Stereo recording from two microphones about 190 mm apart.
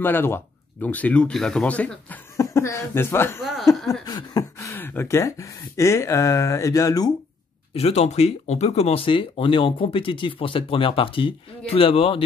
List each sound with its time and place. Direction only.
0.0 s speech: 10° left (ahead or behind)
3.3 s chuckle: centre (ahead or behind)
3.7 s a sound: centre (ahead or behind)
4.0 s speech: 20° left (ahead or behind)
7.7 s speech: 35° left (ahead or behind)